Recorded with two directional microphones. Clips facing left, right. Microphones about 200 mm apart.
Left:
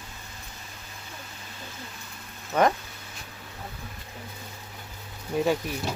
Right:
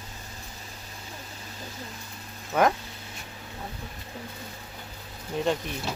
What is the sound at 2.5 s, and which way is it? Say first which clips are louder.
Speech: even; 5° right (ahead or behind).